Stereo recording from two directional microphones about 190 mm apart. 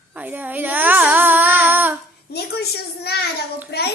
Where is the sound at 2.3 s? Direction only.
55° left (ahead or behind).